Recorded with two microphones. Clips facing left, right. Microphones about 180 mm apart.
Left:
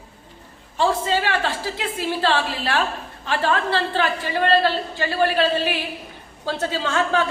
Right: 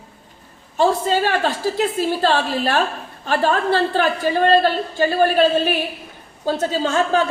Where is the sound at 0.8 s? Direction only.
45° right (ahead or behind).